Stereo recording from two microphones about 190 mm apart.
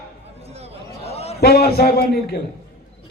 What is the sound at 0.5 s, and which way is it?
Chatter, 35° right (ahead or behind).